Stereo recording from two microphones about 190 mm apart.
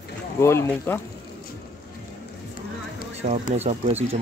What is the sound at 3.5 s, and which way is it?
Speech, 35° right (ahead or behind).